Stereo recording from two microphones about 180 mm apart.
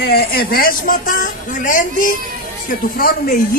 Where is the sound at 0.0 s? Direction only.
60° left (ahead or behind).